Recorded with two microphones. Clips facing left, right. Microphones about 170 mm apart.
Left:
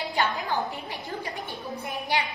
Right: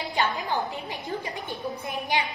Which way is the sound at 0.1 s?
20° right (ahead or behind).